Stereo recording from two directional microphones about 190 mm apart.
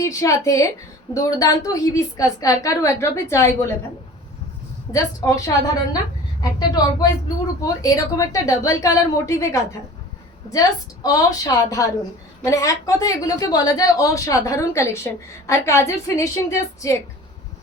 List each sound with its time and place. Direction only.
0.0 s a woman's voice: 15° left (ahead or behind)
4.9 s a woman's voice: 15° left (ahead or behind)
6.4 s a woman's voice: 20° left (ahead or behind)